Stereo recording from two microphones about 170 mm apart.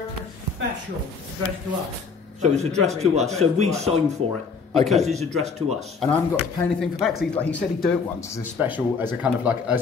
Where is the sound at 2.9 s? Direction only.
40° right (ahead or behind).